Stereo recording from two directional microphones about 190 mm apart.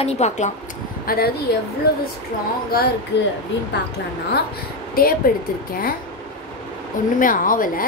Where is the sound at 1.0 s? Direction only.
50° left (ahead or behind).